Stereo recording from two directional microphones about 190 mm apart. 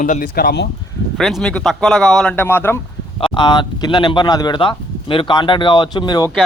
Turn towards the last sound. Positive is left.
turn(degrees=20)  # may be behind; listen again after turning